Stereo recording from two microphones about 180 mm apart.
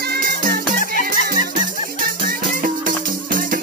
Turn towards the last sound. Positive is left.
turn(degrees=-50)  # may be behind; listen again after turning